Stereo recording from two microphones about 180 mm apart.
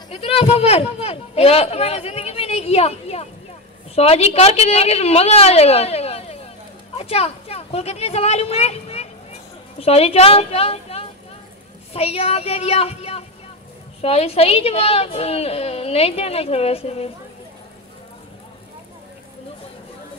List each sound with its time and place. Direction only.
0.1 s a woman's voice: 30° left (ahead or behind)